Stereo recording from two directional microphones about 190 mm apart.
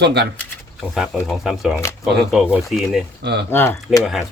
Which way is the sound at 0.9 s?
Centre (ahead or behind).